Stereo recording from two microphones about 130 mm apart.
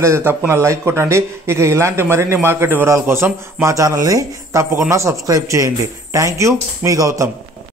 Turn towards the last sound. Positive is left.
turn(degrees=-25)  # may be behind; listen again after turning